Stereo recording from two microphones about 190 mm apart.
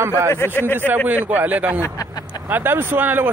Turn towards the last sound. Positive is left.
turn(degrees=-10)  # may be behind; listen again after turning